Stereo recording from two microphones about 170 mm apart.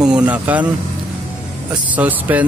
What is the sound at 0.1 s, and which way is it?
Speech, 5° right (ahead or behind).